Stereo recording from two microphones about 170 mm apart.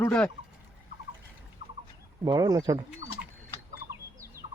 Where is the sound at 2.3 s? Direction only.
20° right (ahead or behind).